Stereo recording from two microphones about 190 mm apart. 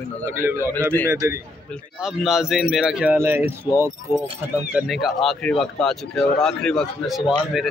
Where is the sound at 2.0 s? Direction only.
5° right (ahead or behind).